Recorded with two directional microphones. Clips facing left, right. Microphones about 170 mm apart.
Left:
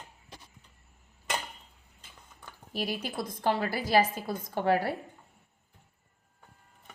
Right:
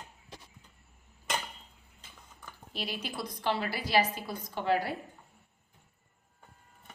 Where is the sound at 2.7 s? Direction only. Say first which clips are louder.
Left 4 dB; 45° left (ahead or behind).